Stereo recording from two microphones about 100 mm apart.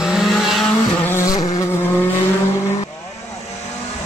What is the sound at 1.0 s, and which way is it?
Vehicle, 30° left (ahead or behind).